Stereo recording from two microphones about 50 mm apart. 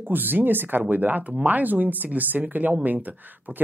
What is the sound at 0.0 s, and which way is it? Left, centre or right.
Speech, right.